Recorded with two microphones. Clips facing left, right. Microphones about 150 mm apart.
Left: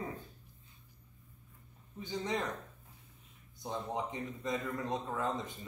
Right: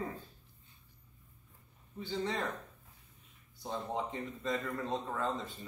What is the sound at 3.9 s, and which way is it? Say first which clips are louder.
Speech: right 1 dB; 15° left (ahead or behind).